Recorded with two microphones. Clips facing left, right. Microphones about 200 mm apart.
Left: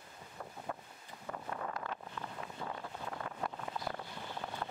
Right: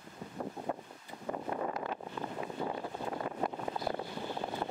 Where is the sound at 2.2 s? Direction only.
20° right (ahead or behind).